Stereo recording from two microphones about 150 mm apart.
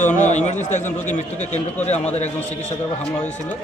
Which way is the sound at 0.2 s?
50° left (ahead or behind).